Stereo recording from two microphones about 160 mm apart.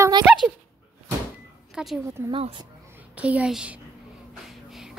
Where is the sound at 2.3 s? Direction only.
35° right (ahead or behind).